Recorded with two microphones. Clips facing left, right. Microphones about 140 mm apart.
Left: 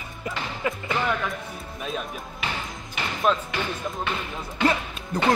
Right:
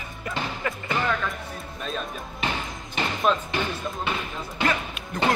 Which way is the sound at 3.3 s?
Centre (ahead or behind).